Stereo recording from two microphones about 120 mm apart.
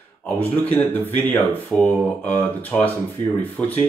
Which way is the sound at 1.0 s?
15° left (ahead or behind).